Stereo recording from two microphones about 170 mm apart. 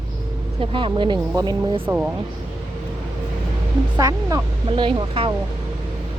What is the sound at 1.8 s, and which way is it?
Speech, 10° right (ahead or behind).